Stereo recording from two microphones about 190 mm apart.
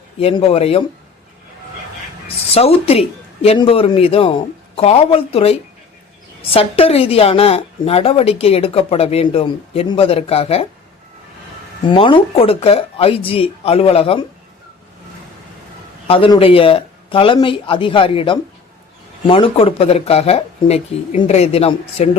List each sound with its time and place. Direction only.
0.2 s a woman's voice: 30° left (ahead or behind)
2.2 s a woman's voice: 30° left (ahead or behind)
11.9 s a woman's voice: 25° left (ahead or behind)
16.0 s a woman's voice: 30° left (ahead or behind)